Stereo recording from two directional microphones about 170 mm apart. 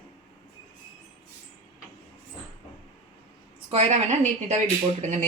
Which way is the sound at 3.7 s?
40° right (ahead or behind).